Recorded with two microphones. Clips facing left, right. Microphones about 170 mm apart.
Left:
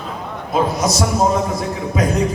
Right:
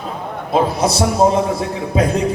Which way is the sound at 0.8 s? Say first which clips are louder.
Right 3 dB; 30° right (ahead or behind).